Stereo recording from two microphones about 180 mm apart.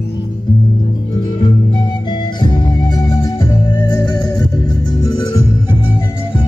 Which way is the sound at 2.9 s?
25° left (ahead or behind).